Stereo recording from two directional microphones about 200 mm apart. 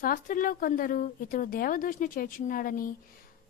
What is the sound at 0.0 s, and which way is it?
A woman's voice, 45° left (ahead or behind).